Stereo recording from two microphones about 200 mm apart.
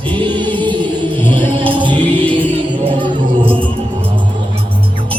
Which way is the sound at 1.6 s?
25° right (ahead or behind).